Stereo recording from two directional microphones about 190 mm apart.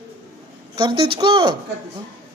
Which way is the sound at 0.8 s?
25° right (ahead or behind).